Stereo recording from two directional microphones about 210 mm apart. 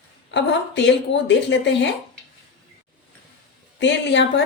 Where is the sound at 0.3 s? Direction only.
55° left (ahead or behind).